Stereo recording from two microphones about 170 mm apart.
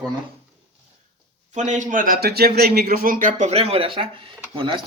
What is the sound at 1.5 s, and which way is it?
A man's voice, 45° right (ahead or behind).